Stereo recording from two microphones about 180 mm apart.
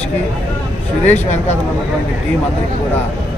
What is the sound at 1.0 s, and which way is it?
Speech, 40° left (ahead or behind).